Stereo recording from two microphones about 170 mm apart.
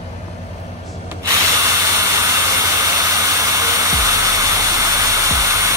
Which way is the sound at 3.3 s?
20° right (ahead or behind).